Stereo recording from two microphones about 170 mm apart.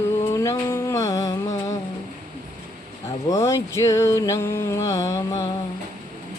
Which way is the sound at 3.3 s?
20° left (ahead or behind).